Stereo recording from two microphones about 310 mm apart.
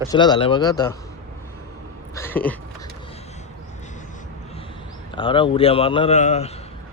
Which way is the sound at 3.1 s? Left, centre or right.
Centre.